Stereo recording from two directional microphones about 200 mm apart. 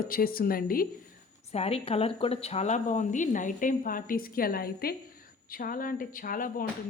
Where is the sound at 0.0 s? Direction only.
45° left (ahead or behind).